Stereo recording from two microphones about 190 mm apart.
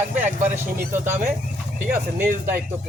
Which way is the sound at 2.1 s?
10° right (ahead or behind).